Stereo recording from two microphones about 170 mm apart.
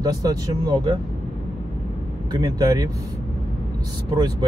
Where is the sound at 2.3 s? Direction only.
20° right (ahead or behind).